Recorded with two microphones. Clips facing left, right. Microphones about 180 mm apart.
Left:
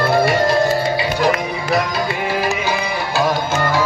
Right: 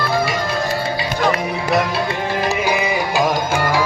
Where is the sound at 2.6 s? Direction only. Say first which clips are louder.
Right 2 dB; 15° right (ahead or behind).